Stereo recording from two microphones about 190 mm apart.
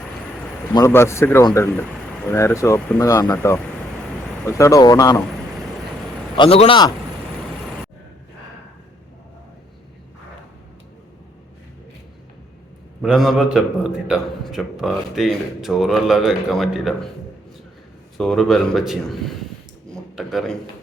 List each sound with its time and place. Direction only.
0.7 s speech: 15° left (ahead or behind)
6.3 s a man's voice: 30° left (ahead or behind)
13.0 s speech: centre (ahead or behind)
18.2 s speech: centre (ahead or behind)
19.9 s a sound: centre (ahead or behind)